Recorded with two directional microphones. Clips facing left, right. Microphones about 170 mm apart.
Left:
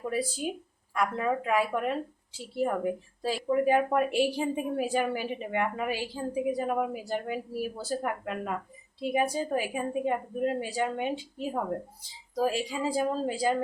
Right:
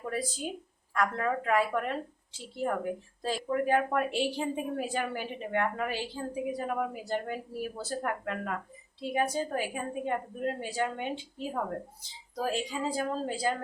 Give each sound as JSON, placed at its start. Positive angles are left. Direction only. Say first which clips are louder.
{"t": 0.0, "sound": "a woman's voice", "louder": "left 4 dB", "side_deg": 10}